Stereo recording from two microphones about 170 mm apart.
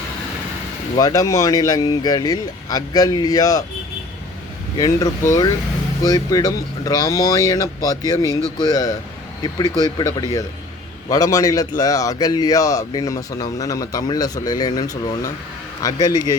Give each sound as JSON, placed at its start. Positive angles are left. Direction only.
{"t": 0.9, "sound": "speech", "side_deg": 20}
{"t": 4.8, "sound": "speech", "side_deg": 20}